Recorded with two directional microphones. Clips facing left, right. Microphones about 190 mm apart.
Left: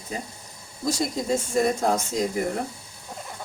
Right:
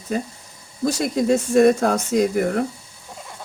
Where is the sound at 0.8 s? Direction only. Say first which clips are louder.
Right 6 dB; 65° right (ahead or behind).